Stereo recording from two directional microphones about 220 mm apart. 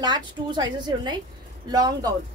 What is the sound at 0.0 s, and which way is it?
A woman's voice, 20° right (ahead or behind).